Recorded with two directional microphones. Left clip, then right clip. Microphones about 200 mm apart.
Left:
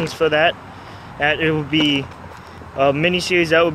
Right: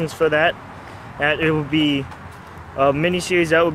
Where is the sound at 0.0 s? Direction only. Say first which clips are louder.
Left 1 dB; 5° left (ahead or behind).